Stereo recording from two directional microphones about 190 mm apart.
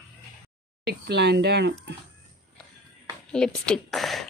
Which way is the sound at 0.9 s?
65° right (ahead or behind).